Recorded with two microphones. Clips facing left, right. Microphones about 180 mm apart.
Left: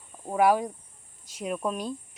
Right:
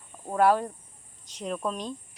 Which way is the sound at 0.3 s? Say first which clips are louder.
Even; 10° left (ahead or behind).